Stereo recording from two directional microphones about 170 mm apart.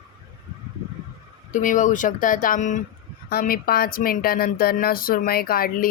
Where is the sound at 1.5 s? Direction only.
50° left (ahead or behind).